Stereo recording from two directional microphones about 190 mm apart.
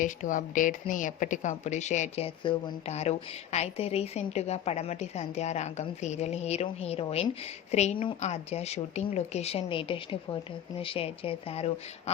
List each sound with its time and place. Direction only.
0.0 s a woman's voice: 45° left (ahead or behind)